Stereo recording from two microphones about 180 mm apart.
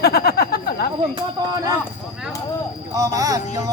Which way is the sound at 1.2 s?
20° right (ahead or behind).